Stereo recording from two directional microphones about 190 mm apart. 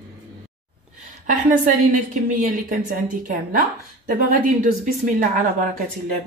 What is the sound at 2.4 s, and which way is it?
Speech, 45° right (ahead or behind).